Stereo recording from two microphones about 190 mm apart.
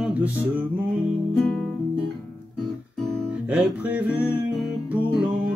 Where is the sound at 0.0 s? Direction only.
5° right (ahead or behind).